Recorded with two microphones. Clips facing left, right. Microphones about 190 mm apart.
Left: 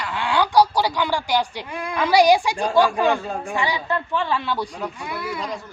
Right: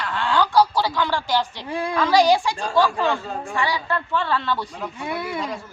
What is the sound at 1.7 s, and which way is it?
Speech, 30° right (ahead or behind).